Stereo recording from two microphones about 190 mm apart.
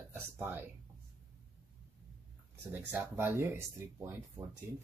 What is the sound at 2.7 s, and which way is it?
Speech, 10° right (ahead or behind).